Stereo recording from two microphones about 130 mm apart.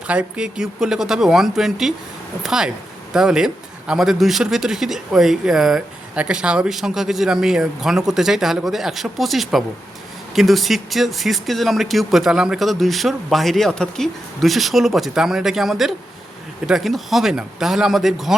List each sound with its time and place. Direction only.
0.1 s speech: 5° right (ahead or behind)